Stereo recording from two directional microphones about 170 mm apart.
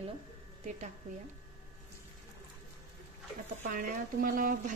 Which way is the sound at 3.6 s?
55° right (ahead or behind).